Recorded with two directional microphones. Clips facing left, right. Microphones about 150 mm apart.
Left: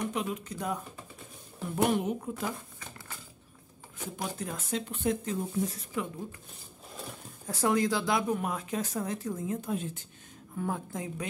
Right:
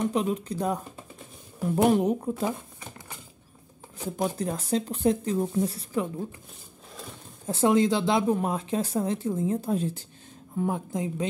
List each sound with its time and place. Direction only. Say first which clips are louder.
0.0 s speech: right 7 dB; 30° right (ahead or behind)
1.9 s speech: right 7 dB; 40° right (ahead or behind)
2.4 s a sound: right 6 dB; 20° right (ahead or behind)
4.2 s speech: right 8 dB; 35° right (ahead or behind)
7.4 s speech: right 6 dB; 25° right (ahead or behind)
10.5 s speech: right 6 dB; 20° right (ahead or behind)